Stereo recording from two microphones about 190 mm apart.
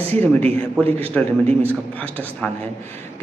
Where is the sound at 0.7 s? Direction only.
10° left (ahead or behind).